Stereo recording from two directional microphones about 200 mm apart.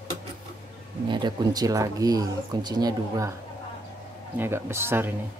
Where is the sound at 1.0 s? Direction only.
20° right (ahead or behind).